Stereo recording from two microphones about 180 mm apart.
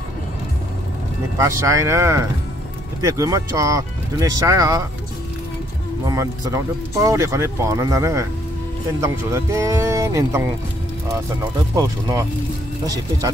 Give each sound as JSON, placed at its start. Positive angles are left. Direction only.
{"t": 1.7, "sound": "speech", "side_deg": -15}
{"t": 6.0, "sound": "speech", "side_deg": -20}
{"t": 11.7, "sound": "speech", "side_deg": -20}